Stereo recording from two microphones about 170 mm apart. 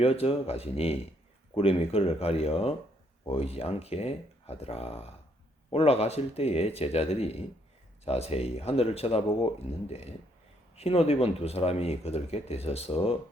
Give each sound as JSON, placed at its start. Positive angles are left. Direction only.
{"t": 0.0, "sound": "speech", "side_deg": 35}
{"t": 10.8, "sound": "speech", "side_deg": 35}